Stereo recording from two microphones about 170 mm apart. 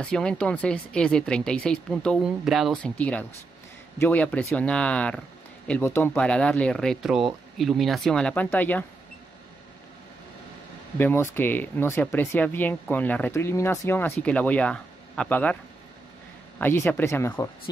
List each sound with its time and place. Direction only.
0.0 s speech: 5° left (ahead or behind)
11.0 s speech: 10° left (ahead or behind)
16.5 s speech: 15° left (ahead or behind)